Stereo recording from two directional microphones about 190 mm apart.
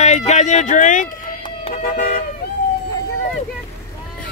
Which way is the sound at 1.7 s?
45° left (ahead or behind).